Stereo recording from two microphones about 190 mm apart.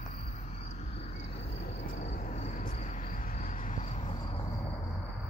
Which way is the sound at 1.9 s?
40° left (ahead or behind).